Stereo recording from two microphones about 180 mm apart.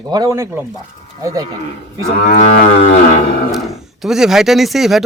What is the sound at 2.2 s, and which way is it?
Cattle, 45° left (ahead or behind).